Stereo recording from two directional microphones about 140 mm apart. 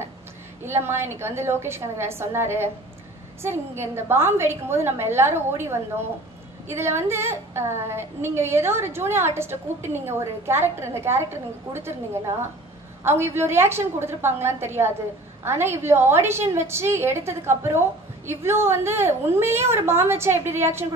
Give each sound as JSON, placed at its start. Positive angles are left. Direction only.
{"t": 0.7, "sound": "a woman's voice", "side_deg": -15}